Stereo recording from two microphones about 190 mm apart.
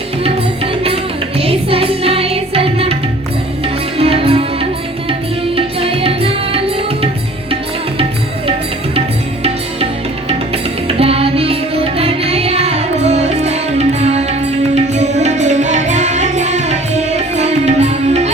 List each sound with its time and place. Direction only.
0.3 s music: 30° right (ahead or behind)
5.5 s music: 30° right (ahead or behind)
10.8 s music: 30° right (ahead or behind)